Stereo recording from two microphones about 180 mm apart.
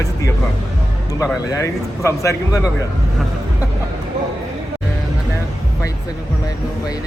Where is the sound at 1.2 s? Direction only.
15° left (ahead or behind).